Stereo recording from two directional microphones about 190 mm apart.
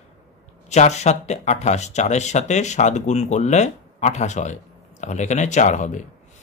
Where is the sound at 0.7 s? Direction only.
35° left (ahead or behind).